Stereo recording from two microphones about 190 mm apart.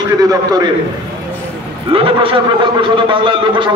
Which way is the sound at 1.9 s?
30° right (ahead or behind).